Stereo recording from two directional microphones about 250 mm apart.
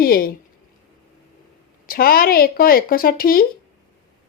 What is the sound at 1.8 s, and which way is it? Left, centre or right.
A woman's voice, left.